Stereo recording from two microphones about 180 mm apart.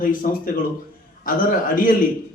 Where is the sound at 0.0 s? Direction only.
50° left (ahead or behind).